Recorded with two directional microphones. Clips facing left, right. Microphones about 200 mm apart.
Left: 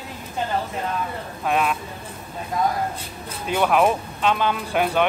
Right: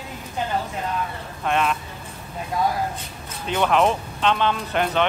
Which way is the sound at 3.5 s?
10° left (ahead or behind).